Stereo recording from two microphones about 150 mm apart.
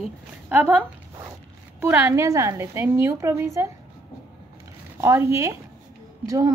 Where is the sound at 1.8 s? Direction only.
15° right (ahead or behind).